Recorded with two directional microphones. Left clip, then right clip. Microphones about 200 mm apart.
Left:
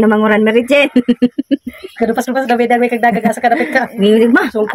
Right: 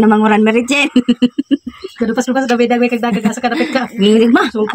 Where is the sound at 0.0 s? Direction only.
30° right (ahead or behind).